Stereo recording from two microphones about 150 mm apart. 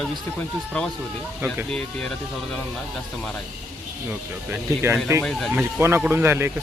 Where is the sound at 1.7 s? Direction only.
5° left (ahead or behind).